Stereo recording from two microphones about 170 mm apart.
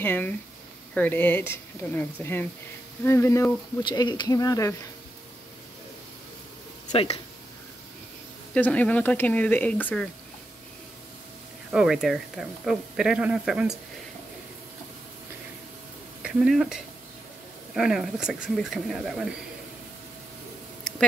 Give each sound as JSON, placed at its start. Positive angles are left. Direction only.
{"t": 0.0, "sound": "speech", "side_deg": 10}
{"t": 6.9, "sound": "speech", "side_deg": 35}
{"t": 8.5, "sound": "speech", "side_deg": 10}
{"t": 11.7, "sound": "speech", "side_deg": -5}
{"t": 16.2, "sound": "speech", "side_deg": -5}